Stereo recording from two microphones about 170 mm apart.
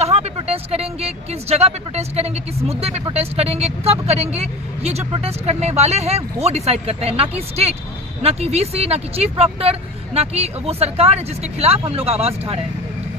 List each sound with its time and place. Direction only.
0.0 s speech: 40° right (ahead or behind)